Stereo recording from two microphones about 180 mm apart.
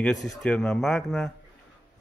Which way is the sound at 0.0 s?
5° left (ahead or behind).